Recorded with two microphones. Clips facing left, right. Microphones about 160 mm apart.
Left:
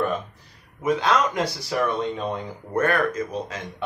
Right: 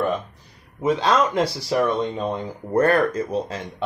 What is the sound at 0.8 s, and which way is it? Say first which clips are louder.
Speech: right 2 dB; 30° right (ahead or behind).